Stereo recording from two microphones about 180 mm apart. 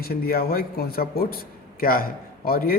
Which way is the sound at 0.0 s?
55° left (ahead or behind).